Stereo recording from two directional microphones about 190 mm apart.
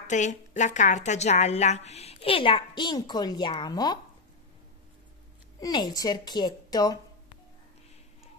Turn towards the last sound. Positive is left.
turn(degrees=20)  # may be behind; listen again after turning